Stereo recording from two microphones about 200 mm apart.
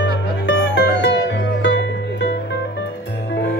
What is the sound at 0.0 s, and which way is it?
Music, 65° left (ahead or behind).